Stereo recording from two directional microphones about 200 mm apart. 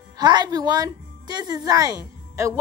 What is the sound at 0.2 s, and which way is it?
A woman's voice, 20° right (ahead or behind).